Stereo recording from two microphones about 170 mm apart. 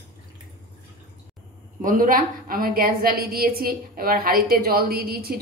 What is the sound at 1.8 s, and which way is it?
A woman's voice, 55° right (ahead or behind).